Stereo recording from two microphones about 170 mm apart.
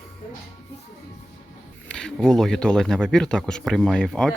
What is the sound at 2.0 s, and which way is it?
Speech, 5° left (ahead or behind).